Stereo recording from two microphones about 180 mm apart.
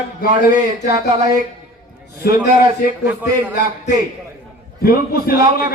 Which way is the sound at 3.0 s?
10° right (ahead or behind).